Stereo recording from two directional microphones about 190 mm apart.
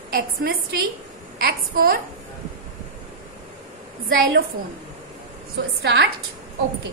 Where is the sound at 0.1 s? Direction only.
55° right (ahead or behind).